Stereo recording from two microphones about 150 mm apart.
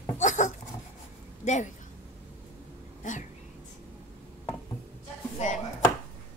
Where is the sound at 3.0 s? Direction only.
55° left (ahead or behind).